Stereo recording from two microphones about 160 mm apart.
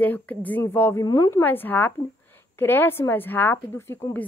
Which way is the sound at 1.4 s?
10° left (ahead or behind).